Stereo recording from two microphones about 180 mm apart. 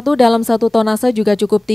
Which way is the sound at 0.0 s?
Centre (ahead or behind).